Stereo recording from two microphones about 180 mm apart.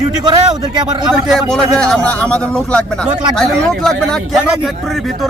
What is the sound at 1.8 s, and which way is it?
Speech, 5° left (ahead or behind).